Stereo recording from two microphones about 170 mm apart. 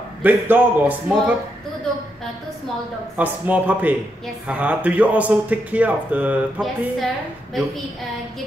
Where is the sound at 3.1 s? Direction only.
10° right (ahead or behind).